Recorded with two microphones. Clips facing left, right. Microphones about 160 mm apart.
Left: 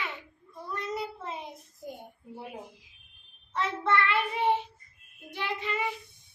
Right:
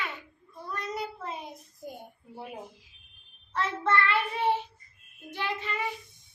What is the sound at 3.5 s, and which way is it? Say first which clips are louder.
Child singing: even; 20° left (ahead or behind).